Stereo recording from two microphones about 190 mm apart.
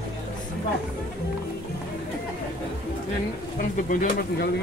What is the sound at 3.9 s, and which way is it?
Speech, 50° left (ahead or behind).